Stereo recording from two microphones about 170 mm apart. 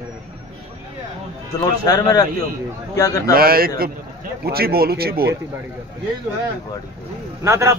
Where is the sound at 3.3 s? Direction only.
60° right (ahead or behind).